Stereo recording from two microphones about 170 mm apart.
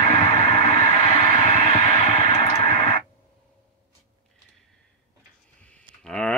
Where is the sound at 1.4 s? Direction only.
40° left (ahead or behind).